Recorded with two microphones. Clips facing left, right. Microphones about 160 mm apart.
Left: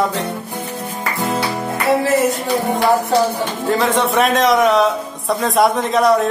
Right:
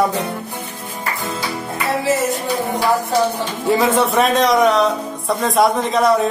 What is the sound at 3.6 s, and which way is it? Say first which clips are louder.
A man's voice: right 2 dB; 5° right (ahead or behind).